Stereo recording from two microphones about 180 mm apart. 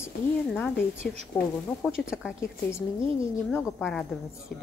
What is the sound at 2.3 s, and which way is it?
Speech, 15° left (ahead or behind).